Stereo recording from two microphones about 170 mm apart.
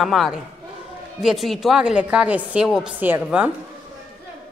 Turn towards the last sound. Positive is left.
turn(degrees=-10)  # may be behind; listen again after turning